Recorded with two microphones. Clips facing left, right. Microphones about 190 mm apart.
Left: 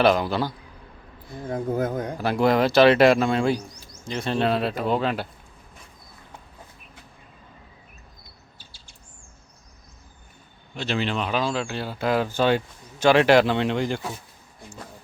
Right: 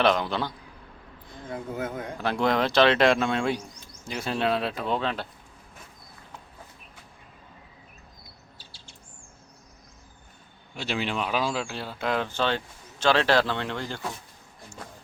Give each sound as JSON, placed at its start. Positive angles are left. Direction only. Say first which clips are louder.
{"t": 0.0, "sound": "speech", "louder": "left 4 dB", "side_deg": 5}
{"t": 1.5, "sound": "speech", "louder": "left 7 dB", "side_deg": 40}
{"t": 2.1, "sound": "speech", "louder": "left 4 dB", "side_deg": 5}
{"t": 10.8, "sound": "speech", "louder": "left 3 dB", "side_deg": -10}